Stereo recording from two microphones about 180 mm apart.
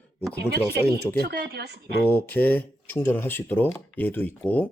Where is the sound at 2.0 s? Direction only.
10° left (ahead or behind).